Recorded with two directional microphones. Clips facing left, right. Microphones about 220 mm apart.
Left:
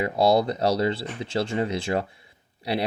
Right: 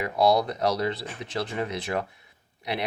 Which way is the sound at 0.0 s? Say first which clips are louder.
Left 2 dB; 30° left (ahead or behind).